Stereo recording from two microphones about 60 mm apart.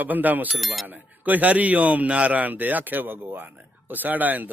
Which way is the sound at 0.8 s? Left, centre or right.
Right.